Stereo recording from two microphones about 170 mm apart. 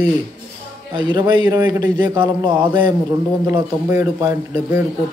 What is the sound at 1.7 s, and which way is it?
A man's voice, 25° right (ahead or behind).